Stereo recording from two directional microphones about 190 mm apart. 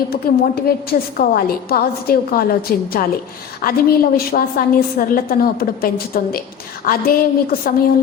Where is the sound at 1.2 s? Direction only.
50° left (ahead or behind).